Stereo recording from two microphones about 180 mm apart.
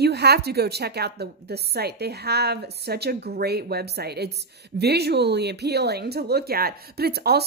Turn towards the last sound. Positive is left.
turn(degrees=-60)  # may be behind; listen again after turning